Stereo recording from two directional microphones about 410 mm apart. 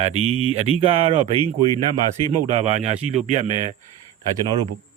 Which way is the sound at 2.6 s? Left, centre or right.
Centre.